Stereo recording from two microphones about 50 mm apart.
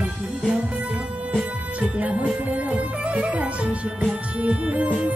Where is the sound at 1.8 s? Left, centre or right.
Right.